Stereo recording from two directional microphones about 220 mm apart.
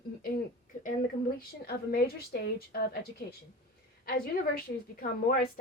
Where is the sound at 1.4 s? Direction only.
40° left (ahead or behind).